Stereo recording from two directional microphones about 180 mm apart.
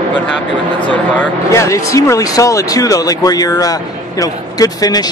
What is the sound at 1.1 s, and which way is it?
Speech, 15° left (ahead or behind).